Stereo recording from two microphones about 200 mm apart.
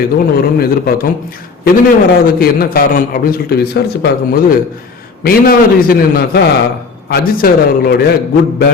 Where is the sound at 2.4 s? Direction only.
45° left (ahead or behind).